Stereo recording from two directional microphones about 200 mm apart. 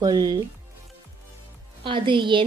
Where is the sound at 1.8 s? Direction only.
25° right (ahead or behind).